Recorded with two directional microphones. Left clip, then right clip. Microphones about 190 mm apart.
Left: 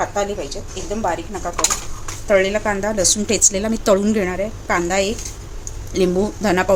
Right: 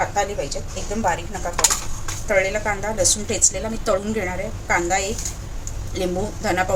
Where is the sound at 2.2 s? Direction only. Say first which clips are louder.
Left 4 dB; 45° left (ahead or behind).